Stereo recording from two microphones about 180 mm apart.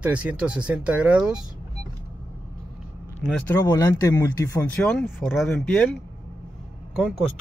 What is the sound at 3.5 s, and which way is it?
Speech, 10° left (ahead or behind).